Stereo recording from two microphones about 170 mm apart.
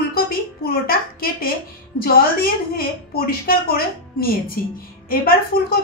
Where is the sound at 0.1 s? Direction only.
60° left (ahead or behind).